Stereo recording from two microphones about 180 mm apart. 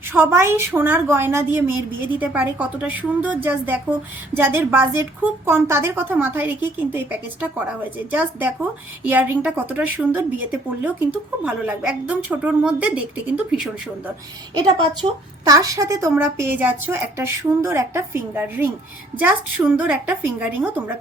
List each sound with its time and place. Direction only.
0.1 s a woman's voice: 15° right (ahead or behind)
14.5 s a woman's voice: 25° right (ahead or behind)